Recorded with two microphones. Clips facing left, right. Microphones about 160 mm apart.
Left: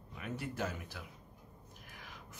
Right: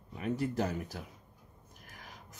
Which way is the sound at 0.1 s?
35° right (ahead or behind).